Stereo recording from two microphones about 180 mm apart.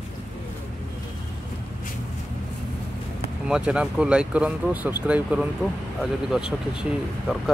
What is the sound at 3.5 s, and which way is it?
Speech, 5° right (ahead or behind).